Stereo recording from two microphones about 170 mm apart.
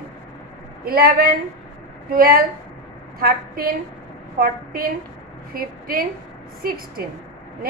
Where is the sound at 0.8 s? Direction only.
65° right (ahead or behind).